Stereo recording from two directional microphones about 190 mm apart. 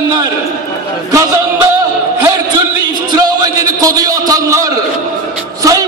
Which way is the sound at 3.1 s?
20° right (ahead or behind).